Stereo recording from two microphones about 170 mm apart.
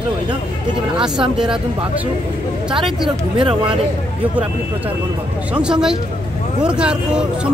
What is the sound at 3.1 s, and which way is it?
Speech, 30° right (ahead or behind).